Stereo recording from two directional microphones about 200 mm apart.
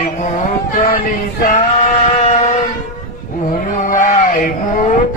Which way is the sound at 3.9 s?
40° left (ahead or behind).